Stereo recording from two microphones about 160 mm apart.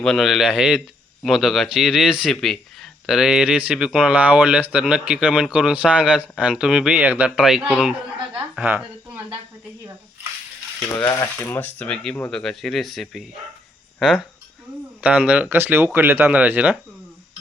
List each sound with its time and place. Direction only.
0.0 s a woman's voice: centre (ahead or behind)
11.2 s speech: 15° left (ahead or behind); by 16.7 s 10° right (ahead or behind)